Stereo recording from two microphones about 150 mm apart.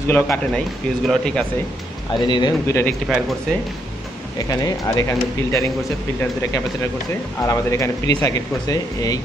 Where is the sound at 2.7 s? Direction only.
15° left (ahead or behind).